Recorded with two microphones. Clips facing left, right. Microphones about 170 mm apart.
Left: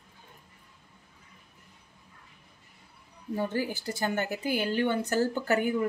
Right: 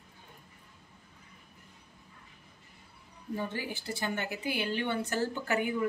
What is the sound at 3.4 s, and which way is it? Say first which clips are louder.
A woman's voice: left 6 dB; 40° left (ahead or behind).